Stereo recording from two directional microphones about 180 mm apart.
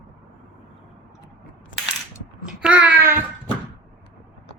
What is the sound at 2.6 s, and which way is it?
Babbling, 5° right (ahead or behind).